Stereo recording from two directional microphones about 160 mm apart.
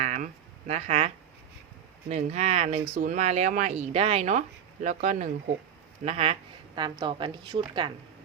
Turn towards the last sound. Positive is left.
turn(degrees=-30)  # may be behind; listen again after turning